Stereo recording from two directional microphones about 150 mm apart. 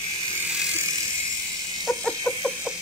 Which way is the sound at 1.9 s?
5° left (ahead or behind).